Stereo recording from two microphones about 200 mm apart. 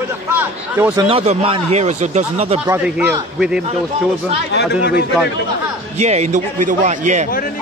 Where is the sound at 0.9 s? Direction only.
25° right (ahead or behind).